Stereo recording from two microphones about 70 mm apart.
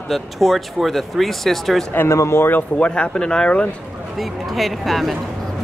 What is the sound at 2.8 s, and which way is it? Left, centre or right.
Speech, centre.